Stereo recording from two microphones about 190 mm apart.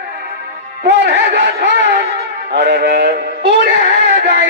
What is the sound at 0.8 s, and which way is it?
Speech, 60° right (ahead or behind).